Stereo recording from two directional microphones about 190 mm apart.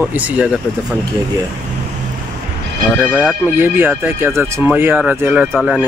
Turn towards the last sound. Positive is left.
turn(degrees=0)  # may be behind; listen again after turning